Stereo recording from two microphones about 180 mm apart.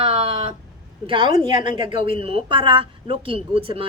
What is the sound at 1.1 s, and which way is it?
A woman's voice, 25° right (ahead or behind).